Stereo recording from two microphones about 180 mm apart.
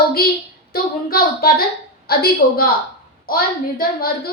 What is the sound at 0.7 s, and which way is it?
A woman's voice, 55° left (ahead or behind).